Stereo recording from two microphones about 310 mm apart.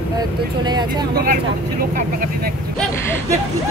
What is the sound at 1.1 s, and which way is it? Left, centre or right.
Speech, right.